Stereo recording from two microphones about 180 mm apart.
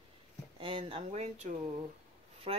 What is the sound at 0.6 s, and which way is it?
Speech, 30° right (ahead or behind).